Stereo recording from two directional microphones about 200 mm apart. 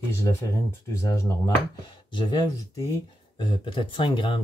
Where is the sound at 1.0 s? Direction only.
15° left (ahead or behind).